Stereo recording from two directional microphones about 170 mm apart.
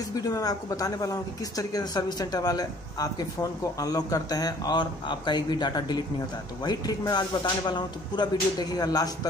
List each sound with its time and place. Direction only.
0.1 s speech: 20° left (ahead or behind)